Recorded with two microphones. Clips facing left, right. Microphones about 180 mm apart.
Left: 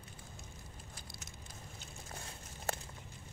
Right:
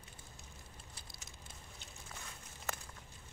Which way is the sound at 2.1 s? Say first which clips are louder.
Left 3 dB; 35° left (ahead or behind).